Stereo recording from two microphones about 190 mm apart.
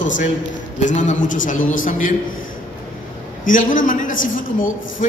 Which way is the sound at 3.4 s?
45° left (ahead or behind).